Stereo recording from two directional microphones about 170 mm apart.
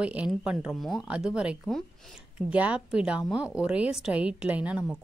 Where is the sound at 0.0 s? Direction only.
5° right (ahead or behind).